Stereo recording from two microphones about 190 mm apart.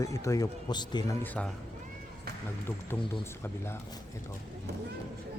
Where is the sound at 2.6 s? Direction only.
10° left (ahead or behind).